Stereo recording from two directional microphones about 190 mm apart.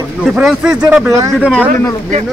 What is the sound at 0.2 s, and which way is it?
Speech, centre (ahead or behind).